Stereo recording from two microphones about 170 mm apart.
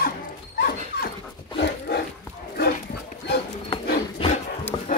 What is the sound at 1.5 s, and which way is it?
Dog, 70° left (ahead or behind).